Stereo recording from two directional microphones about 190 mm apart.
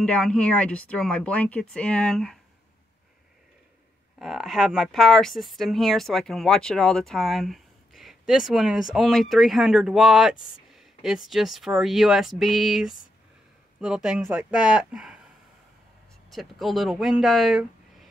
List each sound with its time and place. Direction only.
0.0 s speech: 5° left (ahead or behind)
4.2 s speech: centre (ahead or behind)
16.3 s speech: centre (ahead or behind)